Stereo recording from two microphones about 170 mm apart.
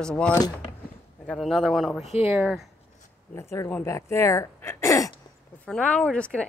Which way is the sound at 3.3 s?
15° left (ahead or behind).